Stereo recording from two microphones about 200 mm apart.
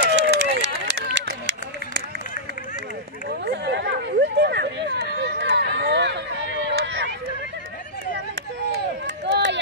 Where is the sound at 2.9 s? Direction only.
55° right (ahead or behind).